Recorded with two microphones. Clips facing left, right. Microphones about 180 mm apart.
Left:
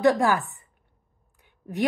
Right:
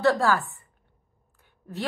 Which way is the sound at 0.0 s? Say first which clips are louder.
Left 2 dB; 15° left (ahead or behind).